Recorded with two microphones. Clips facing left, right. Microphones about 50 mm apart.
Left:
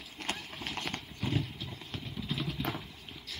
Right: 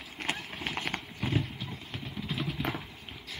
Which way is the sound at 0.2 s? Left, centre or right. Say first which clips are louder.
Right 4 dB; centre.